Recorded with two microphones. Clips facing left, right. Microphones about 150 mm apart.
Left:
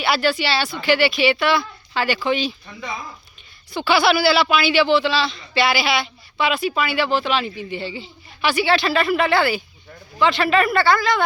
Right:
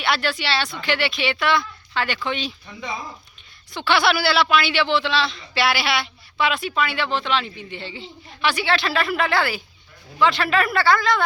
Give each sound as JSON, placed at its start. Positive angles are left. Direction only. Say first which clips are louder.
{"t": 0.0, "sound": "a man's voice", "louder": "left 4 dB", "side_deg": 5}
{"t": 2.8, "sound": "speech", "louder": "even", "side_deg": -20}
{"t": 3.7, "sound": "a man's voice", "louder": "left 3 dB", "side_deg": 5}